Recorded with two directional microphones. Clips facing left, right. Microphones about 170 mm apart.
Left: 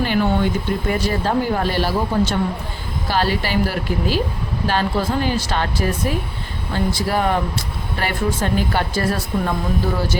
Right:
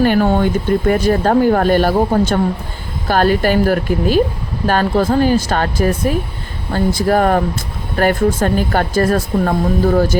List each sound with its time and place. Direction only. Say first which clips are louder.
0.0 s speech: right 5 dB; 50° right (ahead or behind)